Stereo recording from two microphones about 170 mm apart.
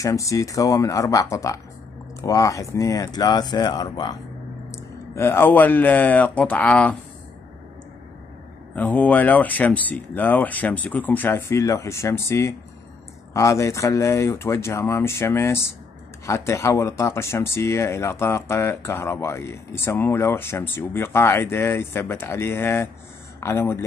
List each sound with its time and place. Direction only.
0.0 s speech: 20° left (ahead or behind)
8.7 s speech: 10° left (ahead or behind)